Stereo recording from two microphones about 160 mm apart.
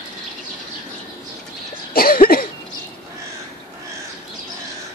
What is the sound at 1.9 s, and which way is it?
Cough, 65° left (ahead or behind).